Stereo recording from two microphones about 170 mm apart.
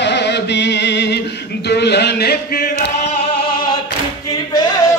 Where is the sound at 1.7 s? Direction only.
75° left (ahead or behind).